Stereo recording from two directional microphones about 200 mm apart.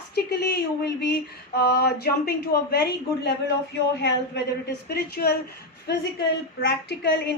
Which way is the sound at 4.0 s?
55° left (ahead or behind).